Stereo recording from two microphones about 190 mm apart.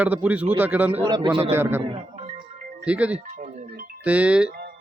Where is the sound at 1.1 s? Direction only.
25° right (ahead or behind).